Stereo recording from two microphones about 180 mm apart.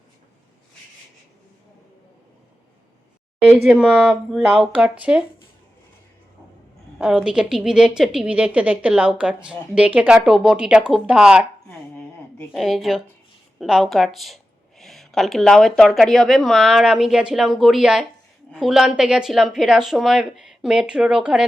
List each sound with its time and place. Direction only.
3.7 s a woman's voice: 5° right (ahead or behind)
7.0 s a woman's voice: 5° right (ahead or behind)
12.5 s a woman's voice: centre (ahead or behind)